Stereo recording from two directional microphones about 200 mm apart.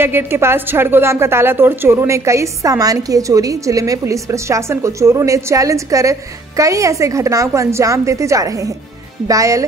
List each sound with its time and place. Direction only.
0.0 s a woman's voice: 10° right (ahead or behind)